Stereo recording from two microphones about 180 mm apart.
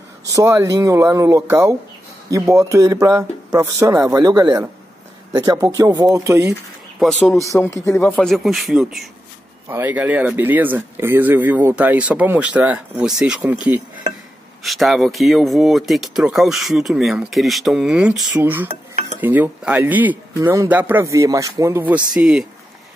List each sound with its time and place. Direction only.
0.3 s speech: 20° right (ahead or behind)
7.0 s speech: centre (ahead or behind)
7.5 s speech: 15° left (ahead or behind)
8.2 s speech: 5° left (ahead or behind)
9.7 s speech: 10° right (ahead or behind)
18.7 s dishes: 35° right (ahead or behind)
19.2 s speech: 10° right (ahead or behind)